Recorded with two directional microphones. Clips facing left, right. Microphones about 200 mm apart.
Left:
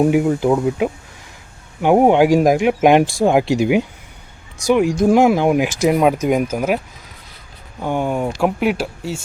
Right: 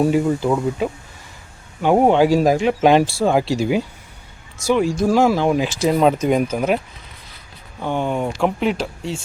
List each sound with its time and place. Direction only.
0.0 s speech: 15° left (ahead or behind)
7.8 s speech: 10° left (ahead or behind)